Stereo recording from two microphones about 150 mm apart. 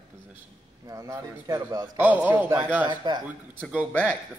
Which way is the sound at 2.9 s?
30° right (ahead or behind).